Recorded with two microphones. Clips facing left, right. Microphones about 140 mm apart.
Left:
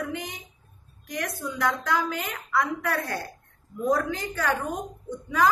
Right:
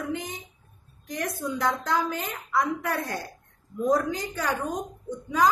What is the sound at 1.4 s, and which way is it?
A woman's voice, 20° right (ahead or behind).